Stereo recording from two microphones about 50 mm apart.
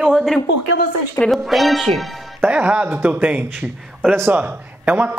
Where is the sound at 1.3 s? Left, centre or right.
Centre.